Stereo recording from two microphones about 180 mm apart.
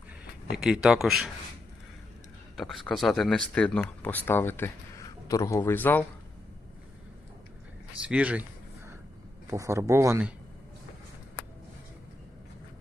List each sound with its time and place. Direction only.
0.5 s speech: centre (ahead or behind)
2.6 s speech: centre (ahead or behind)
8.0 s speech: 5° right (ahead or behind)
9.5 s speech: 15° right (ahead or behind)